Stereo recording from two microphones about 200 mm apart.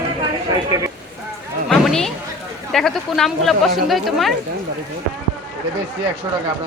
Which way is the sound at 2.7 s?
Centre (ahead or behind).